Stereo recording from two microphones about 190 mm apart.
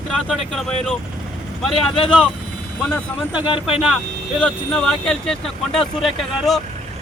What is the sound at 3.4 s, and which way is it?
Speech, 25° left (ahead or behind).